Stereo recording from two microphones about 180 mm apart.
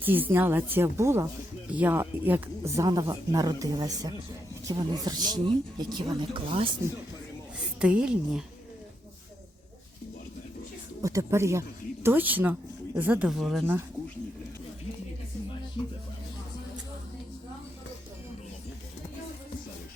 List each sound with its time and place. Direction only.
0.0 s speech: 10° right (ahead or behind); by 6.7 s 30° right (ahead or behind)
7.8 s a woman's voice: 5° right (ahead or behind)
11.0 s a woman's voice: 15° right (ahead or behind); by 13.7 s centre (ahead or behind)